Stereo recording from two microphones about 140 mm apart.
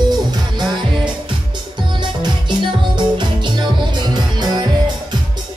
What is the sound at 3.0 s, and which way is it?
Music, 35° right (ahead or behind).